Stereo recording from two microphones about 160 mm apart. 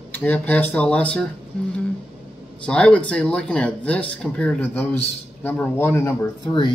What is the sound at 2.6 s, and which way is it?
Speech, 5° left (ahead or behind).